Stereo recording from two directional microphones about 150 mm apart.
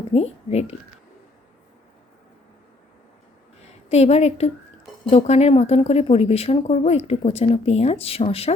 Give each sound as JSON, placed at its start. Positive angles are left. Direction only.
{"t": 0.1, "sound": "a child's voice", "side_deg": 40}
{"t": 3.8, "sound": "speech", "side_deg": 45}